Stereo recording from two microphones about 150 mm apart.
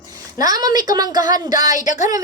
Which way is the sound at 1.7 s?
55° left (ahead or behind).